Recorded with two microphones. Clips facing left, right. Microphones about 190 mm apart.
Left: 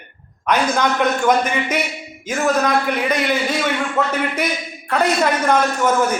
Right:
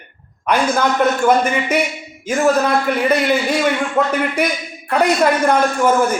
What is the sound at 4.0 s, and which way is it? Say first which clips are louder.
A man's voice: right 3 dB; 15° right (ahead or behind).